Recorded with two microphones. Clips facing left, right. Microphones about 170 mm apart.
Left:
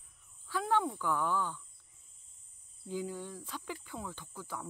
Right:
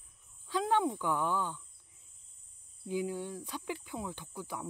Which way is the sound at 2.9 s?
15° right (ahead or behind).